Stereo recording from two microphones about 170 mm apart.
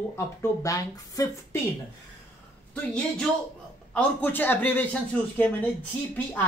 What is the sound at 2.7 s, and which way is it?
A woman's voice, 5° left (ahead or behind).